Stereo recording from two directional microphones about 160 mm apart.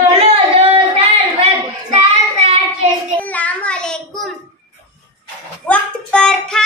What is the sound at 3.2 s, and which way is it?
Child singing, 10° left (ahead or behind).